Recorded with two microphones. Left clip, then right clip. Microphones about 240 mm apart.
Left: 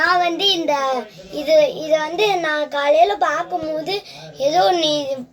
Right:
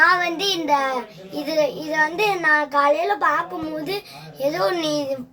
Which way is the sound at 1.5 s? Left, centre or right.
Centre.